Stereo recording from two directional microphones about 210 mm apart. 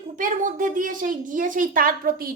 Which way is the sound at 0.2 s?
40° right (ahead or behind).